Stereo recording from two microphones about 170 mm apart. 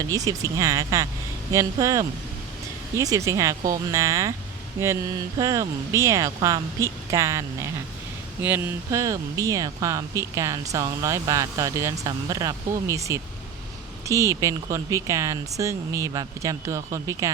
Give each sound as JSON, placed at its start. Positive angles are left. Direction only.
{"t": 0.0, "sound": "speech", "side_deg": -20}